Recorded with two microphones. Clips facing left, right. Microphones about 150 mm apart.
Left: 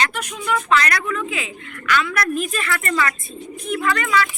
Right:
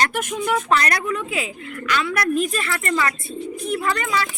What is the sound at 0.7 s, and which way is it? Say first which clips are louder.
A woman's voice: left 1 dB; 35° right (ahead or behind).